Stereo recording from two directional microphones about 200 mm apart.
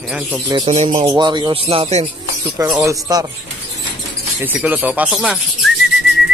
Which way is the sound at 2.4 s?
15° right (ahead or behind).